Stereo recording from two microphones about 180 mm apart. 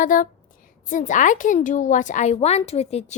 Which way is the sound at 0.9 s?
45° left (ahead or behind).